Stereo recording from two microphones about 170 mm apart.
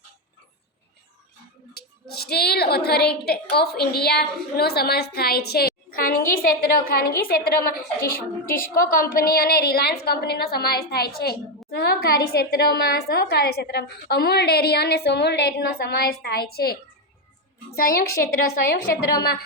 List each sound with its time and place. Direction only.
1.7 s a woman's voice: 70° left (ahead or behind)
17.8 s a woman's voice: 60° left (ahead or behind)
19.2 s a woman's voice: 65° left (ahead or behind)